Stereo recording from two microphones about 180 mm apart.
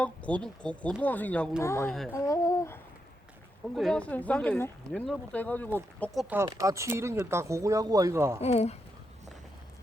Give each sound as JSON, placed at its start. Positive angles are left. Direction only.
{"t": 0.0, "sound": "speech", "side_deg": 5}
{"t": 3.8, "sound": "speech", "side_deg": 5}
{"t": 6.3, "sound": "speech", "side_deg": -15}
{"t": 8.4, "sound": "speech", "side_deg": 35}